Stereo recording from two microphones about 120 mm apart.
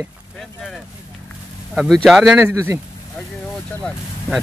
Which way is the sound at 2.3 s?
20° right (ahead or behind).